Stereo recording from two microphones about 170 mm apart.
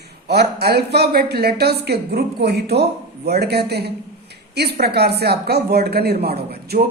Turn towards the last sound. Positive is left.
turn(degrees=-65)  # may be behind; listen again after turning